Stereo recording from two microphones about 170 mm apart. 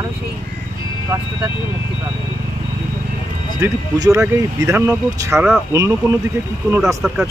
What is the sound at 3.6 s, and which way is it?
Speech, 20° right (ahead or behind).